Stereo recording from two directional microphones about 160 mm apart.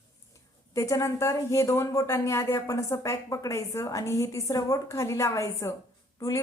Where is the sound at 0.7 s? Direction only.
20° left (ahead or behind).